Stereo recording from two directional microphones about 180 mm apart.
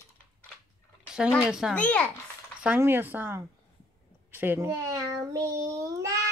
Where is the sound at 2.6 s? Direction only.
10° right (ahead or behind).